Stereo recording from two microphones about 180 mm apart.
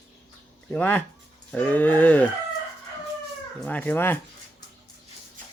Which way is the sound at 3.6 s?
10° left (ahead or behind).